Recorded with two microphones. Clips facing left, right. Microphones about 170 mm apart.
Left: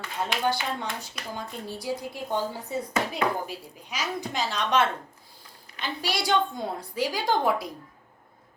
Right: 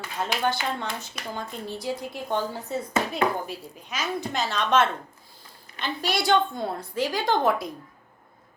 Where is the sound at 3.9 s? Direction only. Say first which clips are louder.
Right 2 dB; 55° right (ahead or behind).